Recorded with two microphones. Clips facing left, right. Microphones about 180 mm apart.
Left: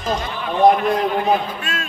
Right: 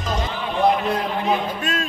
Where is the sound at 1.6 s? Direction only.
40° right (ahead or behind).